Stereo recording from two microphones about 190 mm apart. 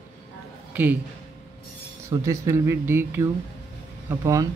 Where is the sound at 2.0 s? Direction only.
15° right (ahead or behind).